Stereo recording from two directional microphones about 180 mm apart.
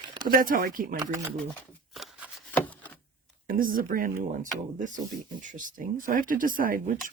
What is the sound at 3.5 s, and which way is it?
Speech, 50° right (ahead or behind).